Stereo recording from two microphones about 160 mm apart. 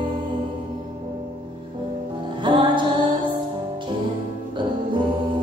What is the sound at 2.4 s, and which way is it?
Music, 30° right (ahead or behind).